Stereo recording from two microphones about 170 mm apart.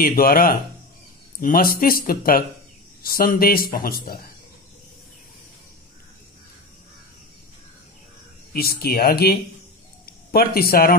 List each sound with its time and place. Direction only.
0.0 s speech: 60° left (ahead or behind)
8.5 s speech: 65° left (ahead or behind)